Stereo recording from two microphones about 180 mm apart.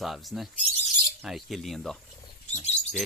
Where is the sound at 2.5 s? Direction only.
5° left (ahead or behind).